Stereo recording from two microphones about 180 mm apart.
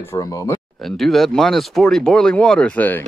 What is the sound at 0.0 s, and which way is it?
Speech, 15° left (ahead or behind).